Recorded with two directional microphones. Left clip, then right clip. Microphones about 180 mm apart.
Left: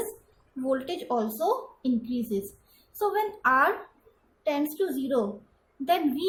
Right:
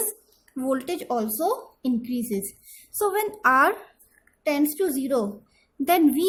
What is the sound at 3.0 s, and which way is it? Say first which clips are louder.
A woman's voice: right 3 dB; 45° right (ahead or behind).